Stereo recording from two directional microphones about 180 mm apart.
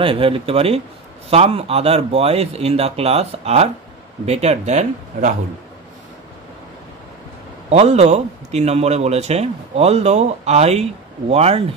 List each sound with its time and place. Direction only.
0.0 s a man's voice: 30° right (ahead or behind)
7.7 s a man's voice: 40° right (ahead or behind)